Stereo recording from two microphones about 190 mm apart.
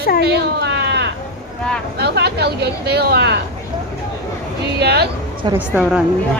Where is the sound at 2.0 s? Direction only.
60° right (ahead or behind).